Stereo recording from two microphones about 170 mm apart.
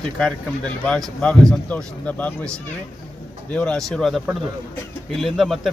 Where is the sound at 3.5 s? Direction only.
5° left (ahead or behind).